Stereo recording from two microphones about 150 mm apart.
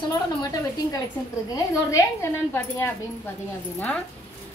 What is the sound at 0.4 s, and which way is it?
Speech, 25° left (ahead or behind).